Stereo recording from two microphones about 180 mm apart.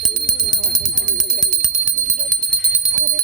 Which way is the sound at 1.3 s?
5° right (ahead or behind).